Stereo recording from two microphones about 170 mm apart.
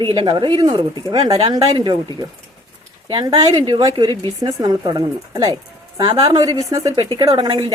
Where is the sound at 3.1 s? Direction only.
25° right (ahead or behind).